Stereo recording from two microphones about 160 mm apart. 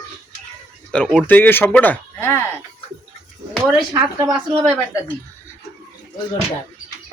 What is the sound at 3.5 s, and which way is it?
Speech, centre (ahead or behind).